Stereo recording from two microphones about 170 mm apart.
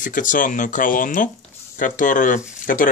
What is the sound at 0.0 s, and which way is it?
Speech, 50° left (ahead or behind).